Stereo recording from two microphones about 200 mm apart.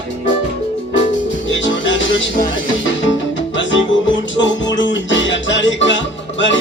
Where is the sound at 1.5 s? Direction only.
65° left (ahead or behind).